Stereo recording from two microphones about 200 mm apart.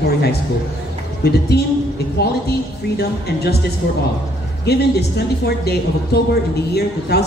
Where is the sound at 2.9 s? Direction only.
55° left (ahead or behind).